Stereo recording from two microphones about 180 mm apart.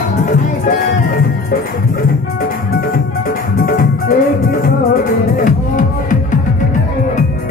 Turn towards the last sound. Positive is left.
turn(degrees=50)  # may be behind; listen again after turning